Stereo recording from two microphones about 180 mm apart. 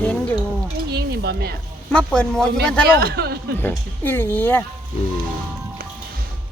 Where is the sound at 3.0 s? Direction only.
60° right (ahead or behind).